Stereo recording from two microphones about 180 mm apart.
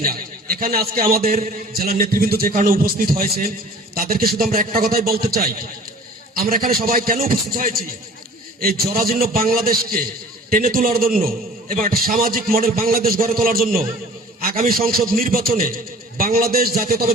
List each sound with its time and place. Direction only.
0.0 s a man's voice: 55° right (ahead or behind)